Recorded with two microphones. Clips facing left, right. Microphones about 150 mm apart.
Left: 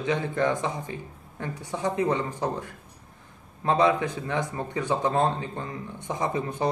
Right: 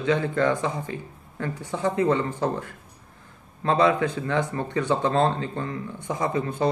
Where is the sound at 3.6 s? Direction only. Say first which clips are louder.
Right 2 dB; 15° left (ahead or behind).